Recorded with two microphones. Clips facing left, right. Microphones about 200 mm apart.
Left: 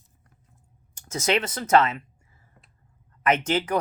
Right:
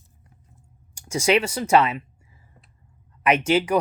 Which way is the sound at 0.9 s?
10° right (ahead or behind).